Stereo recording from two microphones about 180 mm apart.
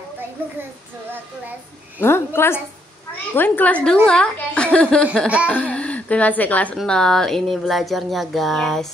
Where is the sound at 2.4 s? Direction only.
10° left (ahead or behind).